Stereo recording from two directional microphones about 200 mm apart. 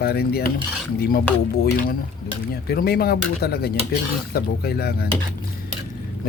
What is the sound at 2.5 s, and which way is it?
Speech, 50° left (ahead or behind).